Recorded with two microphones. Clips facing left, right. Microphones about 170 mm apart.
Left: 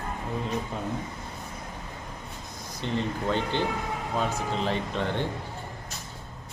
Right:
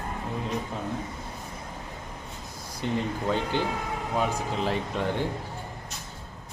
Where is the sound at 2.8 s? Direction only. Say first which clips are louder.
Right 1 dB; 10° right (ahead or behind).